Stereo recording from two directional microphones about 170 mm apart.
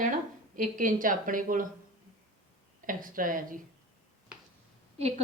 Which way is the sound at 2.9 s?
55° right (ahead or behind).